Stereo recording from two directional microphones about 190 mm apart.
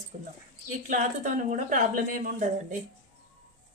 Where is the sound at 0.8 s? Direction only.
40° right (ahead or behind).